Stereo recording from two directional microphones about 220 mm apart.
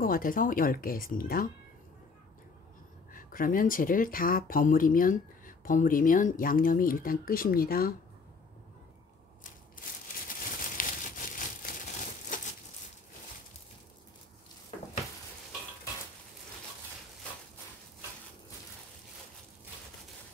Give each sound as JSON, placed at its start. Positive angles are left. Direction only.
{"t": 0.0, "sound": "speech", "side_deg": 40}
{"t": 3.1, "sound": "speech", "side_deg": 40}
{"t": 10.8, "sound": "crumpling", "side_deg": 40}